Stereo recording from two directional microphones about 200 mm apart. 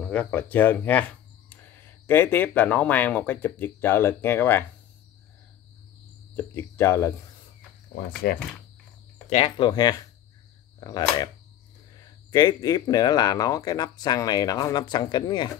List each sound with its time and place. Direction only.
0.0 s speech: 5° left (ahead or behind)
6.3 s speech: 15° left (ahead or behind)
8.3 s speech: 50° left (ahead or behind)
9.3 s speech: 25° left (ahead or behind)